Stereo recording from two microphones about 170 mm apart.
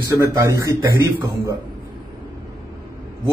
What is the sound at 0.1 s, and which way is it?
A man's voice, 20° right (ahead or behind).